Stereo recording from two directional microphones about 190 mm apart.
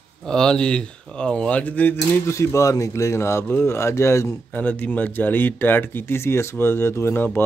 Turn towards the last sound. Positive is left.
turn(degrees=10)  # may be behind; listen again after turning